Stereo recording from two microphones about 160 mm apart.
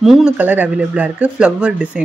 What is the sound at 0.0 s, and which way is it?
Speech, 5° right (ahead or behind).